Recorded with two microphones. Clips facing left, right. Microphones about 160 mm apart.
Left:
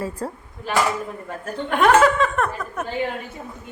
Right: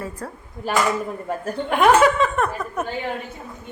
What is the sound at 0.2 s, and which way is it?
Speech, 30° left (ahead or behind).